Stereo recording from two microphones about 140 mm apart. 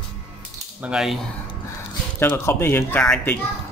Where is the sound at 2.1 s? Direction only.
15° left (ahead or behind).